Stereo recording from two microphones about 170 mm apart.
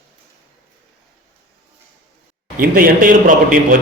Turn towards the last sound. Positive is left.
turn(degrees=-55)  # may be behind; listen again after turning